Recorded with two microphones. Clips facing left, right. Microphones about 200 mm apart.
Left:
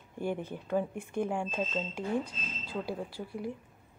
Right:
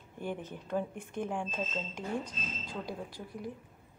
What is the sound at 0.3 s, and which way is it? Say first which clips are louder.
Speech: left 3 dB; 10° left (ahead or behind).